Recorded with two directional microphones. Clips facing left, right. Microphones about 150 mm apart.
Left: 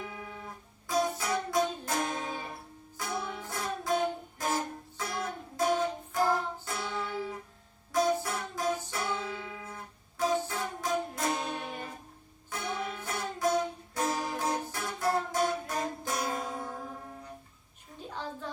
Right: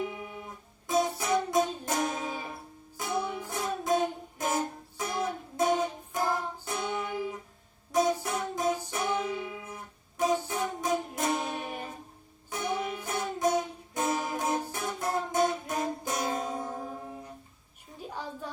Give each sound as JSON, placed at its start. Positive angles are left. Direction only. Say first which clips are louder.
{"t": 0.0, "sound": "music", "louder": "right 5 dB", "side_deg": -15}
{"t": 3.0, "sound": "music", "louder": "right 4 dB", "side_deg": -20}
{"t": 18.1, "sound": "a sound", "louder": "even", "side_deg": -10}